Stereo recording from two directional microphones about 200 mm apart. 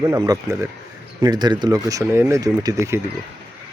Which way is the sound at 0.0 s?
15° right (ahead or behind).